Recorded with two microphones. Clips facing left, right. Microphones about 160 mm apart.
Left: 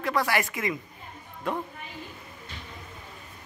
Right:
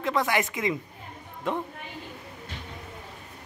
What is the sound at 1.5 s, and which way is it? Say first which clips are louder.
Speech: right 1 dB; 20° right (ahead or behind).